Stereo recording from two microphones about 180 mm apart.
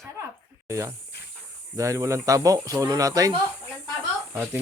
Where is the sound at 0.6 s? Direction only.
15° right (ahead or behind).